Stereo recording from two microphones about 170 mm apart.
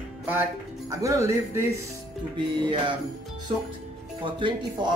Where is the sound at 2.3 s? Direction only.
30° right (ahead or behind).